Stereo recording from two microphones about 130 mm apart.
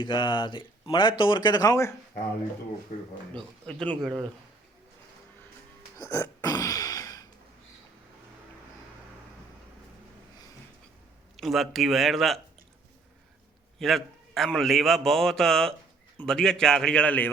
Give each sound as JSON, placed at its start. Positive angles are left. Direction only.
{"t": 0.0, "sound": "speech", "side_deg": 35}
{"t": 3.3, "sound": "a man's voice", "side_deg": 5}
{"t": 6.1, "sound": "a sound", "side_deg": 20}
{"t": 11.3, "sound": "a man's voice", "side_deg": 0}
{"t": 13.7, "sound": "a man's voice", "side_deg": 0}